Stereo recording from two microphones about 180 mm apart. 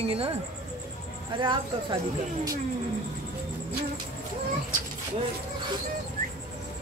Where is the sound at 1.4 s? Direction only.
25° right (ahead or behind).